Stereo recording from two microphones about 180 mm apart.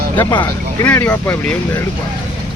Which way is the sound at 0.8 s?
10° left (ahead or behind).